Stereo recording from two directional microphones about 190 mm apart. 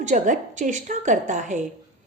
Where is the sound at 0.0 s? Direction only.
40° right (ahead or behind).